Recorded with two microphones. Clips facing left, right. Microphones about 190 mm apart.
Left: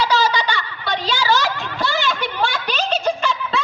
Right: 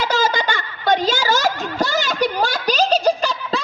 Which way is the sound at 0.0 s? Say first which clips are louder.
Left 1 dB; 45° right (ahead or behind).